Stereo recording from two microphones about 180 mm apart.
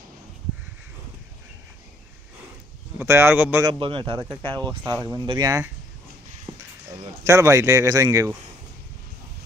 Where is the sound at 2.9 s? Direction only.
15° right (ahead or behind).